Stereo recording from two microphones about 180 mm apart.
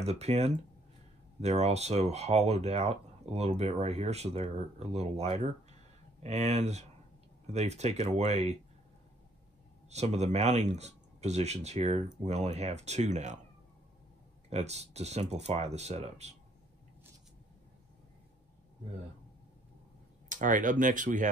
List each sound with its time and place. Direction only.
0.0 s speech: 35° right (ahead or behind)
9.8 s speech: 40° right (ahead or behind)
14.5 s speech: 35° right (ahead or behind)
20.2 s speech: 45° right (ahead or behind)